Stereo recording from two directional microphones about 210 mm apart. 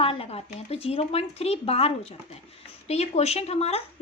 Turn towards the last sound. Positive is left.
turn(degrees=30)  # may be behind; listen again after turning